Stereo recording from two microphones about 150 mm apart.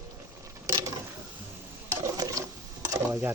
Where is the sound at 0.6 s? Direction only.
20° right (ahead or behind).